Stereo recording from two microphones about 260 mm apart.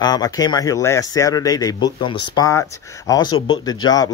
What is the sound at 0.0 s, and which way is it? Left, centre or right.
Speech, centre.